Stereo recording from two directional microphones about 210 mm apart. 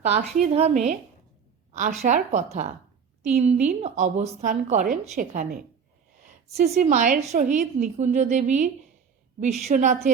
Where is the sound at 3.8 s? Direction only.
30° right (ahead or behind).